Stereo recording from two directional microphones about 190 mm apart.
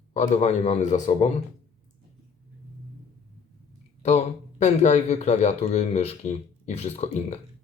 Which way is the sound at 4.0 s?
35° left (ahead or behind).